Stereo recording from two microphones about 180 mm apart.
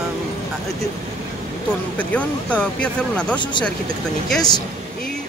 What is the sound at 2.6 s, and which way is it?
Speech, 5° left (ahead or behind).